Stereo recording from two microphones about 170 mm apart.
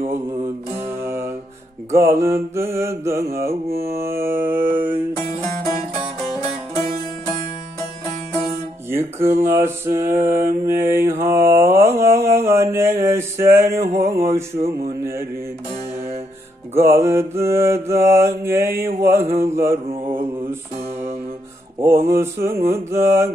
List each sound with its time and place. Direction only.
1.0 s music: 15° right (ahead or behind)
1.9 s mantra: 15° right (ahead or behind)
8.9 s mantra: 15° right (ahead or behind)
14.7 s music: 15° right (ahead or behind)
16.7 s mantra: 15° right (ahead or behind)
21.7 s mantra: 15° right (ahead or behind)